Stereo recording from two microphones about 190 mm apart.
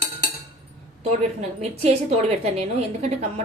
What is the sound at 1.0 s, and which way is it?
A woman's voice, 30° right (ahead or behind).